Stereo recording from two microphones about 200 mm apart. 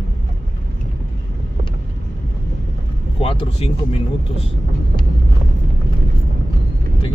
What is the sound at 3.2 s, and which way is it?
Speech, 30° left (ahead or behind).